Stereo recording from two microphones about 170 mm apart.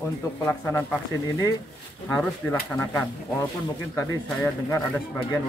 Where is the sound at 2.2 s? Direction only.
10° left (ahead or behind).